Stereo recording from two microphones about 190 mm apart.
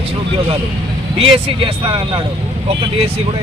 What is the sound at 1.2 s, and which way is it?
Speech, 30° right (ahead or behind).